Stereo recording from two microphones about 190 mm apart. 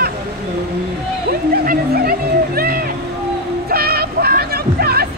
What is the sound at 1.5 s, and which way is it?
Music, 50° right (ahead or behind).